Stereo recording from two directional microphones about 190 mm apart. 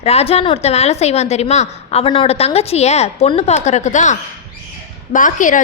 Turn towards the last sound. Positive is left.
turn(degrees=45)  # may be behind; listen again after turning